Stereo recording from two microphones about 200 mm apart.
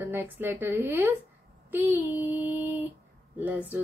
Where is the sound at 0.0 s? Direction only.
10° right (ahead or behind).